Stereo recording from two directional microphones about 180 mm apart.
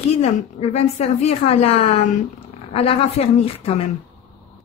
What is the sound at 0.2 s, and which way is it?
A woman's voice, 35° left (ahead or behind).